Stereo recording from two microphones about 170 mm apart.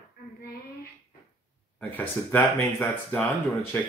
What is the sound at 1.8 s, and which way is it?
Speech, 10° left (ahead or behind).